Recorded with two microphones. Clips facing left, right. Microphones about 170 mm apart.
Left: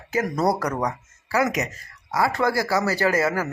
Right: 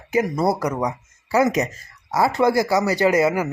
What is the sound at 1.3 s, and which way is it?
Speech, 25° right (ahead or behind).